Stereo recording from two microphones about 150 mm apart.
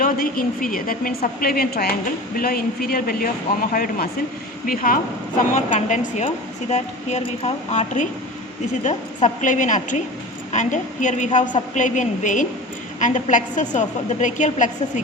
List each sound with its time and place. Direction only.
0.0 s a woman's voice: 75° left (ahead or behind)
4.6 s speech: 70° left (ahead or behind)
5.4 s a woman's voice: 55° left (ahead or behind)